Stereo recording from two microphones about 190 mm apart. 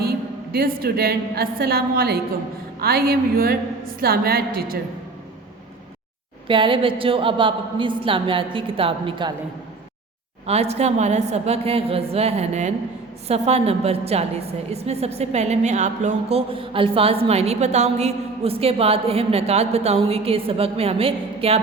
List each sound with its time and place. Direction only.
0.0 s a woman's voice: 55° right (ahead or behind)
6.5 s a woman's voice: 25° right (ahead or behind)
10.4 s a woman's voice: 35° right (ahead or behind)